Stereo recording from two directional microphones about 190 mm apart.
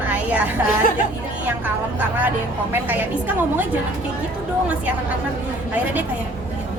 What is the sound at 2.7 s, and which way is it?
Speech, 10° right (ahead or behind).